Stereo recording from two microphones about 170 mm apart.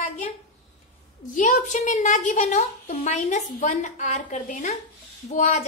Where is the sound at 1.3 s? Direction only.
50° left (ahead or behind).